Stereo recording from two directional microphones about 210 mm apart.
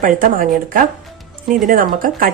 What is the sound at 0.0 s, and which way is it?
A woman's voice, 40° right (ahead or behind).